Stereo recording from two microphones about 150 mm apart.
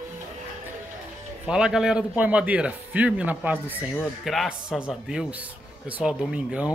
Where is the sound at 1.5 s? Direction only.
5° right (ahead or behind).